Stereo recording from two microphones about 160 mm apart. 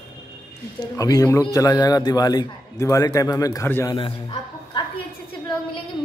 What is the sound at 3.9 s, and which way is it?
Speech, 30° left (ahead or behind).